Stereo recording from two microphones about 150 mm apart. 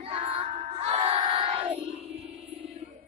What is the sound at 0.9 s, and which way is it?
Crowd, 40° right (ahead or behind).